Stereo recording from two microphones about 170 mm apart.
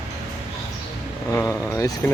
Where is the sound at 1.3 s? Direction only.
20° left (ahead or behind).